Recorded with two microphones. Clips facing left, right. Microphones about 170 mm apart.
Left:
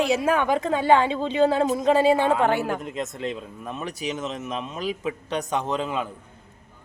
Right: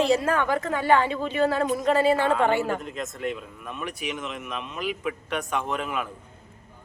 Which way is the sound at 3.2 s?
30° left (ahead or behind).